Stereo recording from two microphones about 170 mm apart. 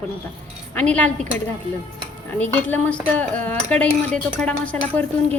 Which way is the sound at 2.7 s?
10° left (ahead or behind).